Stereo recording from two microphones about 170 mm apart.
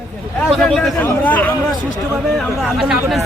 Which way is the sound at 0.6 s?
5° left (ahead or behind).